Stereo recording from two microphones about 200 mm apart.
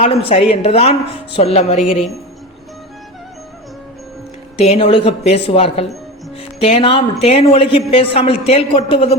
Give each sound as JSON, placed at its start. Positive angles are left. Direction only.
{"t": 0.0, "sound": "a woman's voice", "side_deg": 30}
{"t": 4.6, "sound": "a woman's voice", "side_deg": 30}